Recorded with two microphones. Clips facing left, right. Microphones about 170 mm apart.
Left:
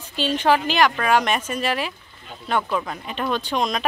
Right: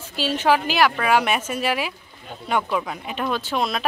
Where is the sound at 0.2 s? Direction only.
5° right (ahead or behind).